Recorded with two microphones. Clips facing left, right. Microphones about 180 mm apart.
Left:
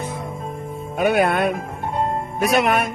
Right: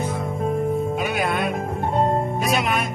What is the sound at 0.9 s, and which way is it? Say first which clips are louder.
Music: left 5 dB; 60° left (ahead or behind).